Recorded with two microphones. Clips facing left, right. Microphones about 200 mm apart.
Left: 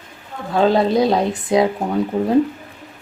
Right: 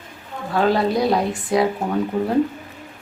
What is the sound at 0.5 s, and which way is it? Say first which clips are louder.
A woman's voice: left 3 dB; 20° left (ahead or behind).